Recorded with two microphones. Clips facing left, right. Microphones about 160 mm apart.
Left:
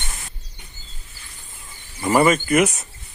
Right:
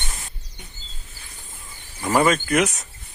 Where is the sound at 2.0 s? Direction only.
10° left (ahead or behind).